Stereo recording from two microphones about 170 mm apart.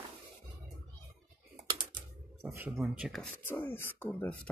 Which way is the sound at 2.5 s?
10° right (ahead or behind).